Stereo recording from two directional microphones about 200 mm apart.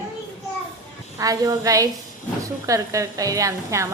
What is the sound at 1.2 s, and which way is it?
A woman's voice, 15° right (ahead or behind).